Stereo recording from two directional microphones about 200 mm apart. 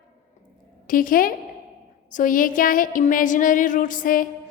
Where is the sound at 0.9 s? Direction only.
45° left (ahead or behind).